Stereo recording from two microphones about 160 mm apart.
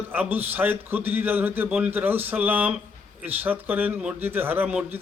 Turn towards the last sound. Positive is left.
turn(degrees=-10)  # may be behind; listen again after turning